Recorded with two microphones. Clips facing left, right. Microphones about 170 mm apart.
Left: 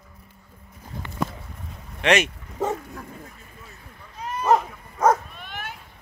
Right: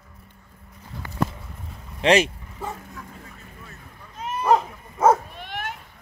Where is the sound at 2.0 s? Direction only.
30° right (ahead or behind).